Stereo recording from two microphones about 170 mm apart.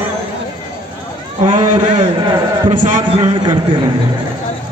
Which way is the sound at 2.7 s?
45° right (ahead or behind).